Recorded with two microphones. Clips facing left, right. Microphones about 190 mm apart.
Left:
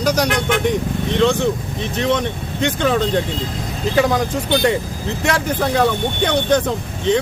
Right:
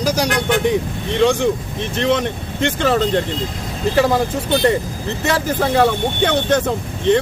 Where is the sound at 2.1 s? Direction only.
5° right (ahead or behind).